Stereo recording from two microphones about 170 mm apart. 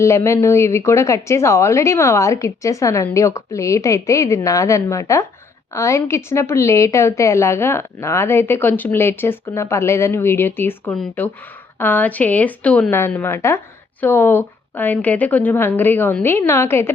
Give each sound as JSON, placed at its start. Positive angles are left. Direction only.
{"t": 0.0, "sound": "a woman's voice", "side_deg": 15}